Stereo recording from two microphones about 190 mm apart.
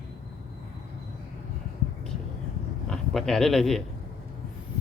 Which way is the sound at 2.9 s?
Centre (ahead or behind).